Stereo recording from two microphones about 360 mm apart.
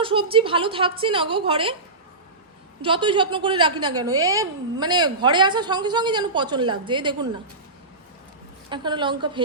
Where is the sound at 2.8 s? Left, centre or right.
Centre.